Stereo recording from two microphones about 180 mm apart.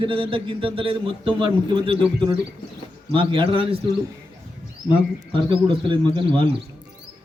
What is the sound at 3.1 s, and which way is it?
Speech, 25° right (ahead or behind).